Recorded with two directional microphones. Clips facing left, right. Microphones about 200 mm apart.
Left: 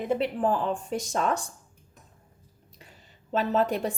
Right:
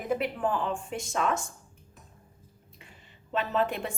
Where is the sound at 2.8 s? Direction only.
40° left (ahead or behind).